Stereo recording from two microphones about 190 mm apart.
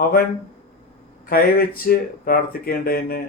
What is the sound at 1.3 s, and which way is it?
Speech, 50° left (ahead or behind).